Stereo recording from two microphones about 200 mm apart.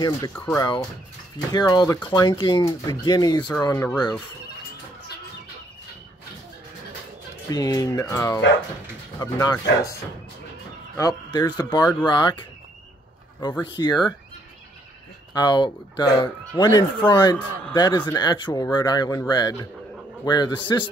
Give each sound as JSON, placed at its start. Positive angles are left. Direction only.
{"t": 0.0, "sound": "speech", "side_deg": 15}
{"t": 7.4, "sound": "speech", "side_deg": 20}
{"t": 11.0, "sound": "speech", "side_deg": 15}
{"t": 15.3, "sound": "speech", "side_deg": 20}